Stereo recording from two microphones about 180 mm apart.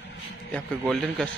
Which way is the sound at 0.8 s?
5° left (ahead or behind).